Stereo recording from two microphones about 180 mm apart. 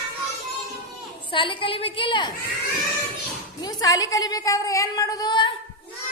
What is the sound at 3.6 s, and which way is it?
A woman's voice, 20° left (ahead or behind).